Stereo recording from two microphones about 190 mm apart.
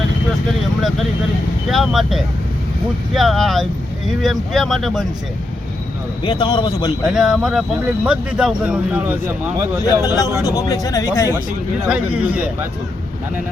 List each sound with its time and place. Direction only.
1.7 s speech: centre (ahead or behind)
6.2 s a man's voice: 25° left (ahead or behind)
7.1 s a man's voice: centre (ahead or behind)
10.0 s a man's voice: 20° left (ahead or behind)
11.9 s speech: 5° right (ahead or behind)